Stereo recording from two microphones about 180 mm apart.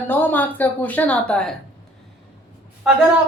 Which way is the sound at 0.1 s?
10° left (ahead or behind).